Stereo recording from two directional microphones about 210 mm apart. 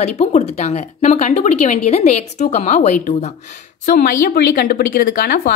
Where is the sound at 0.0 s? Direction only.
35° left (ahead or behind).